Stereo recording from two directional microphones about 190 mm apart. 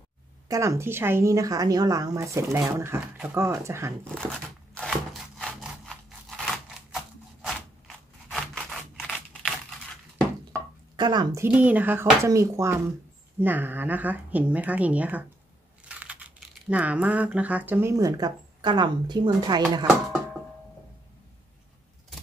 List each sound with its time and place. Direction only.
0.5 s speech: 15° right (ahead or behind)
4.1 s speech: 5° left (ahead or behind)
4.8 s a sound: centre (ahead or behind)
8.3 s scissors: centre (ahead or behind)
11.0 s a woman's voice: 20° right (ahead or behind)
11.4 s speech: 10° right (ahead or behind)